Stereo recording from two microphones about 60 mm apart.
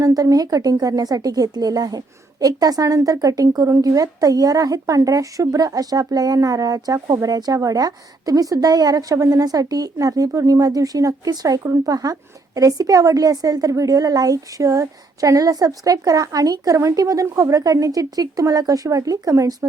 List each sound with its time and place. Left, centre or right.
0.0 s a woman's voice: right
3.7 s a woman's voice: right